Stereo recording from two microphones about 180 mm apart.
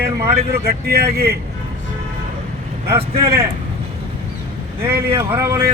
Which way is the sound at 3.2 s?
15° right (ahead or behind).